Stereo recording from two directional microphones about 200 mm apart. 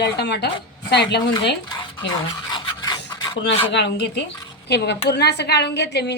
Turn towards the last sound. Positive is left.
turn(degrees=55)  # may be behind; listen again after turning